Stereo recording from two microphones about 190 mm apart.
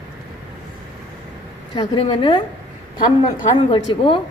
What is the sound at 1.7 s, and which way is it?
Speech, 25° left (ahead or behind).